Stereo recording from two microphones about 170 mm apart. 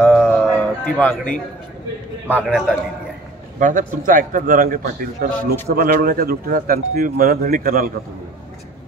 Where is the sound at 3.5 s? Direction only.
50° right (ahead or behind).